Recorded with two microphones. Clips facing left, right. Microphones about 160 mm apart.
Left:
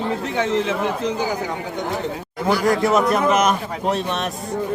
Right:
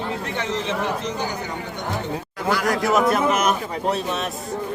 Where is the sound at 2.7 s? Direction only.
Centre (ahead or behind).